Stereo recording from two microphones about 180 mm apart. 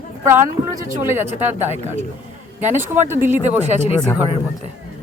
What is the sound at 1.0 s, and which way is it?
Speech, 10° right (ahead or behind).